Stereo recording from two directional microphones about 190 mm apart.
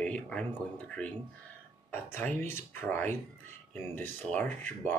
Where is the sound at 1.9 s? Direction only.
10° left (ahead or behind).